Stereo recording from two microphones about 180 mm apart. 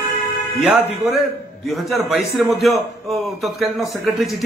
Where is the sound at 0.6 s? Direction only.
Centre (ahead or behind).